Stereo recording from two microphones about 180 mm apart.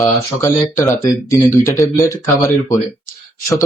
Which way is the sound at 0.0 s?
15° left (ahead or behind).